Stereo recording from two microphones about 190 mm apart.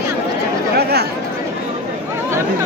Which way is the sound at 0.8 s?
60° right (ahead or behind).